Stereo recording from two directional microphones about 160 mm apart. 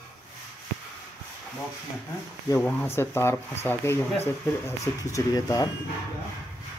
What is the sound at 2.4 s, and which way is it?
Speech, 15° left (ahead or behind).